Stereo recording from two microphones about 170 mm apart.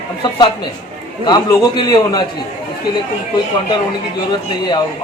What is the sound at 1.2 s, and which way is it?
A man's voice, 25° left (ahead or behind).